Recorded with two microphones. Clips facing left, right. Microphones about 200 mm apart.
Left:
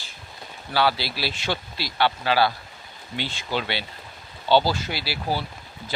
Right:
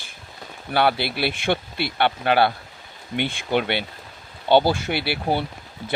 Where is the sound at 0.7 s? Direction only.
55° right (ahead or behind).